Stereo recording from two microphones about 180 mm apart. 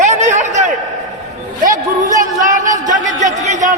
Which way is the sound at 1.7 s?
45° right (ahead or behind).